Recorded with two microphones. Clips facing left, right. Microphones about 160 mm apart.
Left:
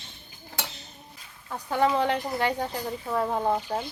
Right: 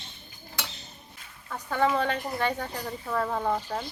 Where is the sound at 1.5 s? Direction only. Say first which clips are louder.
Left 1 dB; 20° left (ahead or behind).